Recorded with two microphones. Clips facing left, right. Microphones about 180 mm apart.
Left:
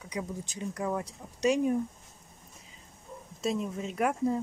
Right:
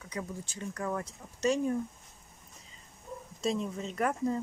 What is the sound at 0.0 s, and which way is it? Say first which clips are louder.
Speech: left 3 dB; 15° left (ahead or behind).